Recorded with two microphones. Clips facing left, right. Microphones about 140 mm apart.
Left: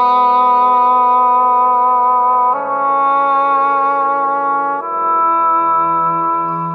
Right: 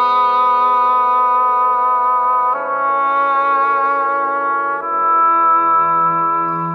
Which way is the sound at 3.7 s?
25° left (ahead or behind).